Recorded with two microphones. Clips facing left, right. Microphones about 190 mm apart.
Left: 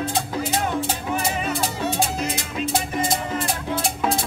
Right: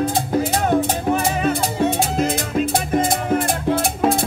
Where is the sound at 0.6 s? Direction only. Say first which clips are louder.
Right 7 dB; 50° right (ahead or behind).